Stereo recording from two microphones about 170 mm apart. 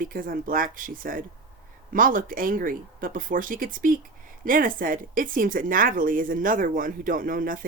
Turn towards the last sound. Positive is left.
turn(degrees=-55)  # may be behind; listen again after turning